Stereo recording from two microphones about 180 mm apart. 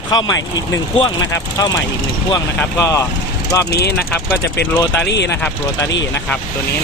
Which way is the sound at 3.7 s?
65° left (ahead or behind).